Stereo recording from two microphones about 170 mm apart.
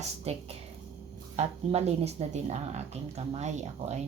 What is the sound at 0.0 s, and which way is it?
Speech, 40° right (ahead or behind).